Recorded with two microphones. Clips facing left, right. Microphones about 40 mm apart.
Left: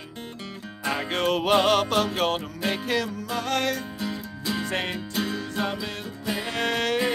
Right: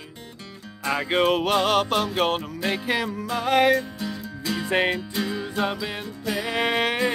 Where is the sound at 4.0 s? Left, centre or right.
Centre.